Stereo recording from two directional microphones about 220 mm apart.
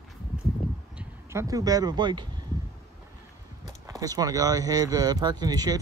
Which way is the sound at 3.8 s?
15° right (ahead or behind).